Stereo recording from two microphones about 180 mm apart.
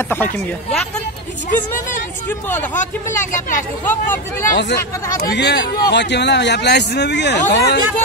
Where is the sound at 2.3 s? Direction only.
10° left (ahead or behind).